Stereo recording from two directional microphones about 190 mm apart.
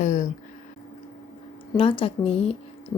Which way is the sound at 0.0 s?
40° left (ahead or behind).